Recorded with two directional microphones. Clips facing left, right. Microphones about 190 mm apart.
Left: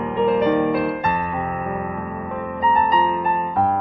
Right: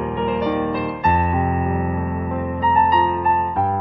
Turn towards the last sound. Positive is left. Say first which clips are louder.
# right 1 dB
turn(degrees=-35)  # may be behind; listen again after turning